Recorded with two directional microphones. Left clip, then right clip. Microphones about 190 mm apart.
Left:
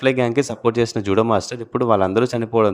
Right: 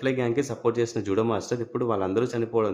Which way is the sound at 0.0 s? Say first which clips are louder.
Left 8 dB; 45° left (ahead or behind).